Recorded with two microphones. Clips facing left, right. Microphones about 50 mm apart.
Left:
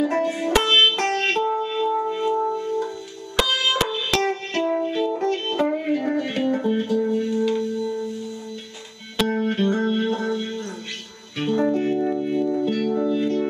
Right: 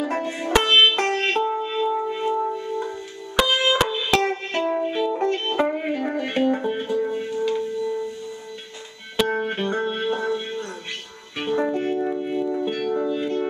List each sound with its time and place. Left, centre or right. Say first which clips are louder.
0.1 s music: left 1 dB; centre
9.1 s music: even; centre